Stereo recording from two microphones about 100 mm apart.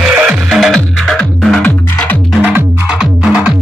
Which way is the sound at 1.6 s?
15° left (ahead or behind).